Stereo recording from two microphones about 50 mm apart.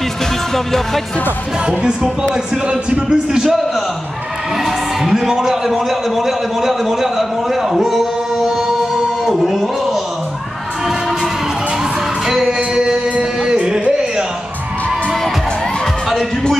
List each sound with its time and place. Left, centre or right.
0.7 s music: centre
2.3 s a man's voice: centre
3.4 s music: centre
4.6 s a man's voice: centre
9.2 s music: centre
12.3 s music: centre
12.5 s music: right